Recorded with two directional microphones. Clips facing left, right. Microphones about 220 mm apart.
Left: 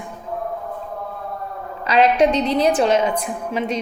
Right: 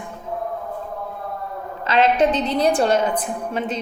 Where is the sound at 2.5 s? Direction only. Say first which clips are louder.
Left 1 dB; 5° left (ahead or behind).